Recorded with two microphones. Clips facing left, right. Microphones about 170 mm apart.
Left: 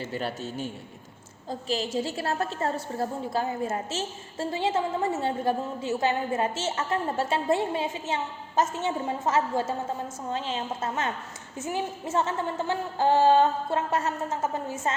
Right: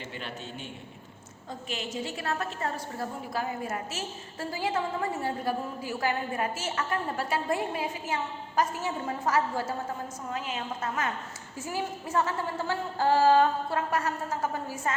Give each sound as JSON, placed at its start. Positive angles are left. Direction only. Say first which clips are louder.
{"t": 0.1, "sound": "a man's voice", "louder": "left 7 dB", "side_deg": 40}